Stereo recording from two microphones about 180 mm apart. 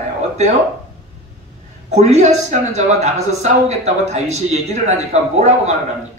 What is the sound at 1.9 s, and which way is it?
Speech, 40° right (ahead or behind).